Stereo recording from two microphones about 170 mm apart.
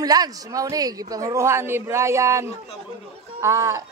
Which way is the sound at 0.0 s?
20° right (ahead or behind).